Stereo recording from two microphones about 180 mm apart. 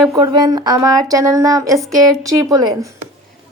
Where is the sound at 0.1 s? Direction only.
20° right (ahead or behind).